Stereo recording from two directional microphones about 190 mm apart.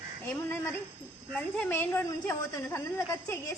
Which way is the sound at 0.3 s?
10° left (ahead or behind).